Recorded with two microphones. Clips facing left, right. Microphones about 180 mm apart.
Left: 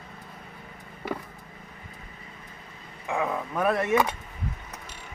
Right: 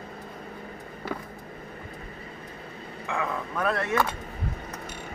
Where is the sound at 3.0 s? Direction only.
15° left (ahead or behind).